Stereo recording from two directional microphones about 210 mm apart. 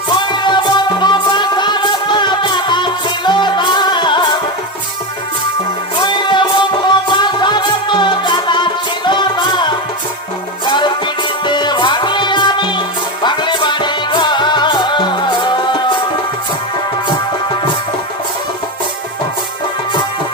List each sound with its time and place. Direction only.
0.2 s music: 20° left (ahead or behind)
6.0 s music: 20° left (ahead or behind)